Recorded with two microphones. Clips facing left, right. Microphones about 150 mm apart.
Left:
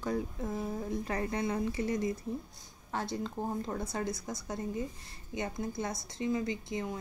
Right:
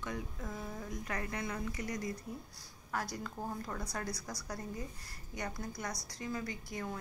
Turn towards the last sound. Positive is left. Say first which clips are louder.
# left 6 dB
turn(degrees=20)  # may be behind; listen again after turning